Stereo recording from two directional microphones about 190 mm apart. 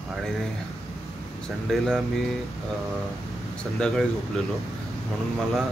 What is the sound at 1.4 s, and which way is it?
Speech, centre (ahead or behind).